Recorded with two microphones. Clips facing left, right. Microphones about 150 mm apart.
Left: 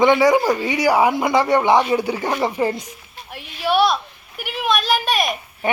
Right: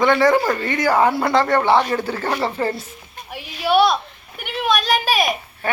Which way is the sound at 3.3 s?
Centre (ahead or behind).